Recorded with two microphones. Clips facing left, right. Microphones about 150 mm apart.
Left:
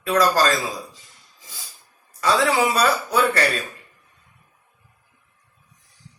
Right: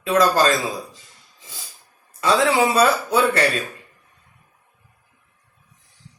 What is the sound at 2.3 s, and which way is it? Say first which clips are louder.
Speech: right 2 dB; 15° right (ahead or behind).